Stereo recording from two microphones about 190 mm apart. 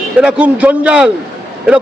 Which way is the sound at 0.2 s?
5° right (ahead or behind).